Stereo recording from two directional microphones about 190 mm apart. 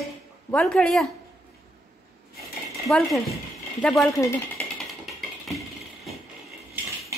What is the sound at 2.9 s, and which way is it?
A woman's voice, centre (ahead or behind).